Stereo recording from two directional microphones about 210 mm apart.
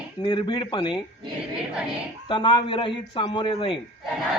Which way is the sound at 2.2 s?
20° left (ahead or behind).